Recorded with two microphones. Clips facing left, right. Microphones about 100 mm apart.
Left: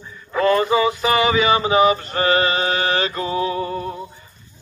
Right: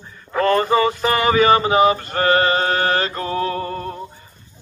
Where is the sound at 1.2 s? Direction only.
45° right (ahead or behind).